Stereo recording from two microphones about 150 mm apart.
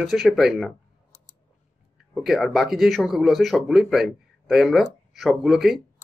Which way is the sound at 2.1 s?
Centre (ahead or behind).